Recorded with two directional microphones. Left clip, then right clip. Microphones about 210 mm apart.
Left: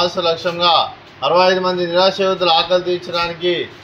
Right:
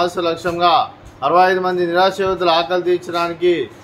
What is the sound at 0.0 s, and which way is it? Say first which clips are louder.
A man's voice: left 1 dB; 20° right (ahead or behind).